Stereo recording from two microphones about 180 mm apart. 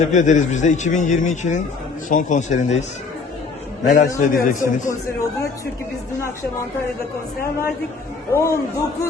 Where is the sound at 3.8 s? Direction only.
50° left (ahead or behind).